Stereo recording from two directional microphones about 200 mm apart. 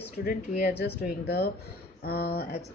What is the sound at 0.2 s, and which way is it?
A woman's voice, 45° left (ahead or behind).